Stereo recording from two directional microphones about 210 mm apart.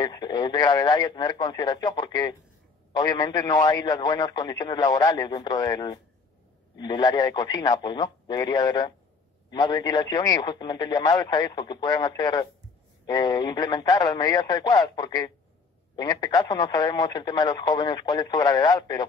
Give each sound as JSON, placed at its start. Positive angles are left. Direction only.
{"t": 0.0, "sound": "speech", "side_deg": 20}